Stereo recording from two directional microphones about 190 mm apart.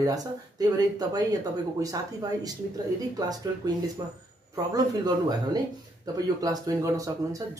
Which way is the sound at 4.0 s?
20° right (ahead or behind).